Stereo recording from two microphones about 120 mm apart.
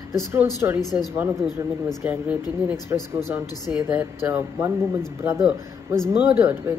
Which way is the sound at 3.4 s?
30° left (ahead or behind).